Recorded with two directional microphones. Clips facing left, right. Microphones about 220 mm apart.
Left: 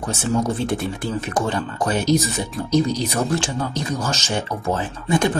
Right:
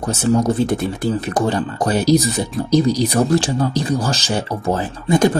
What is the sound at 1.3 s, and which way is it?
Speech, 35° right (ahead or behind).